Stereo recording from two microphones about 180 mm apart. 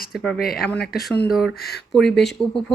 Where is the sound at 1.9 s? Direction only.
Centre (ahead or behind).